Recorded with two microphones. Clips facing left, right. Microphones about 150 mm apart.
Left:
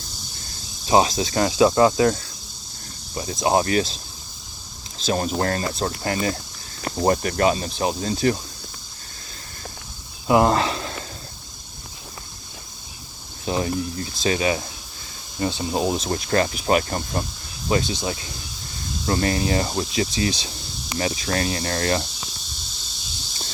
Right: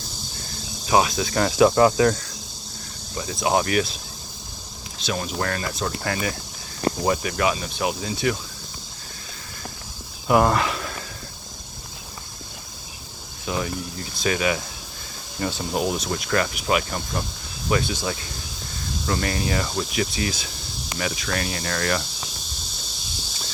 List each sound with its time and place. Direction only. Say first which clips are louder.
0.9 s speech: left 2 dB; 25° left (ahead or behind)
5.0 s speech: left 4 dB; 40° left (ahead or behind)
7.0 s speech: left 6 dB; 50° left (ahead or behind)
10.2 s speech: left 1 dB; 20° left (ahead or behind)
13.4 s speech: left 4 dB; 30° left (ahead or behind)
17.7 s speech: left 1 dB; 25° left (ahead or behind)